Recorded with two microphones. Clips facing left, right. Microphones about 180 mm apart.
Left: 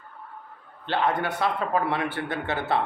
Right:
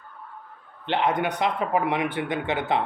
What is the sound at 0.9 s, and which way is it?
Speech, 20° right (ahead or behind).